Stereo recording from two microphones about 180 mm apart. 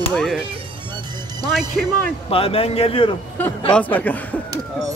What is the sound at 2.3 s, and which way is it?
Speech, 30° left (ahead or behind).